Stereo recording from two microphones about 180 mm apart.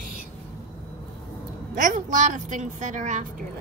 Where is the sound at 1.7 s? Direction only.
45° right (ahead or behind).